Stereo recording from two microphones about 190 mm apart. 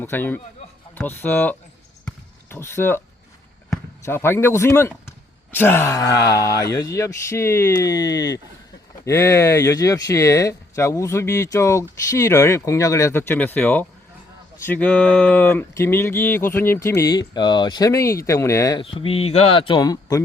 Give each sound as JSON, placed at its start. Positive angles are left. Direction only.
{"t": 0.0, "sound": "speech", "side_deg": 10}
{"t": 2.0, "sound": "basketball bounce", "side_deg": 10}
{"t": 4.0, "sound": "speech", "side_deg": 10}
{"t": 18.9, "sound": "speech", "side_deg": 30}